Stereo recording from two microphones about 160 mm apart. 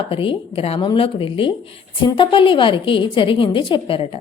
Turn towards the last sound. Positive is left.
turn(degrees=35)  # may be behind; listen again after turning